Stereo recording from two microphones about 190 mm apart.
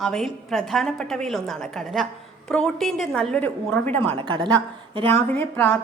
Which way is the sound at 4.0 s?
25° right (ahead or behind).